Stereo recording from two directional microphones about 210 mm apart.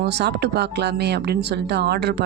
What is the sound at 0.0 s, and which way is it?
Speech, 55° right (ahead or behind).